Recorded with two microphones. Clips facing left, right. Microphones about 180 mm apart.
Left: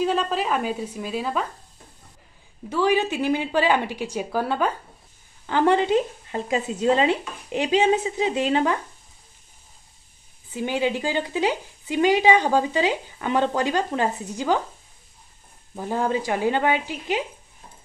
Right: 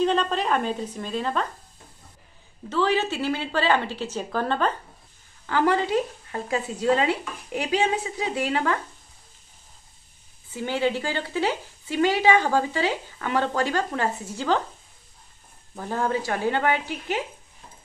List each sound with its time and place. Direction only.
0.0 s speech: 5° left (ahead or behind)
2.7 s speech: 15° left (ahead or behind)
5.5 s speech: 20° left (ahead or behind)
10.5 s speech: 15° left (ahead or behind)
15.7 s speech: 15° left (ahead or behind)